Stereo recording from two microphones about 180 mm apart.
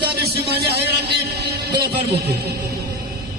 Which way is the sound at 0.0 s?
65° right (ahead or behind).